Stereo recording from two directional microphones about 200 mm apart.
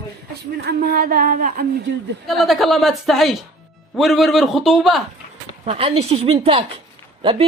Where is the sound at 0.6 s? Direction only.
50° right (ahead or behind).